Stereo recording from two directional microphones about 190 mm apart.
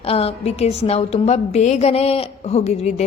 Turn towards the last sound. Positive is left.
turn(degrees=35)  # may be behind; listen again after turning